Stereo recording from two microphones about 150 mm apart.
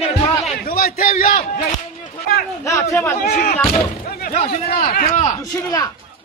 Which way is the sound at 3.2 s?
55° left (ahead or behind).